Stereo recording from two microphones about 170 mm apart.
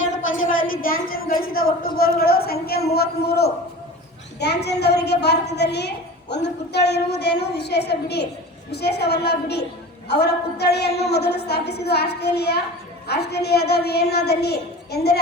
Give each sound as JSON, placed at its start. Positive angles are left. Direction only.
{"t": 0.4, "sound": "a woman's voice", "side_deg": 55}